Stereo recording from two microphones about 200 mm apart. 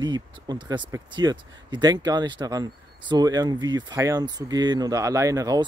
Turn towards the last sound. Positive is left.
turn(degrees=-15)  # may be behind; listen again after turning